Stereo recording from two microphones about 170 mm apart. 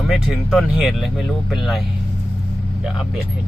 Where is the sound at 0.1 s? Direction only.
Centre (ahead or behind).